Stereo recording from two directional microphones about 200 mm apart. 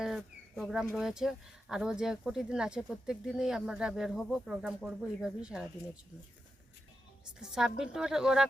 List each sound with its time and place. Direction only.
0.0 s bird: centre (ahead or behind)
0.9 s speech: centre (ahead or behind)
7.3 s speech: 5° right (ahead or behind)